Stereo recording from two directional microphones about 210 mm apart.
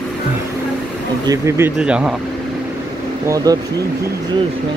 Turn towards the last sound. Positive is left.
turn(degrees=-20)  # may be behind; listen again after turning